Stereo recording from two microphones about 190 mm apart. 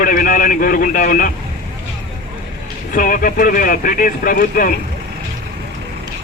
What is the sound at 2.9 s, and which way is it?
A man's voice, 45° left (ahead or behind).